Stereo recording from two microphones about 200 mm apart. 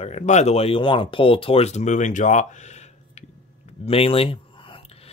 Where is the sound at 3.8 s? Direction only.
30° left (ahead or behind).